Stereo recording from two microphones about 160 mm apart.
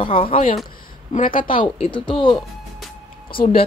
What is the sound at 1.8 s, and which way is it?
Speech, 30° left (ahead or behind).